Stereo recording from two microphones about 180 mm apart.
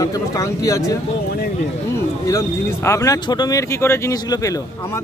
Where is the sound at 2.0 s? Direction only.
15° left (ahead or behind).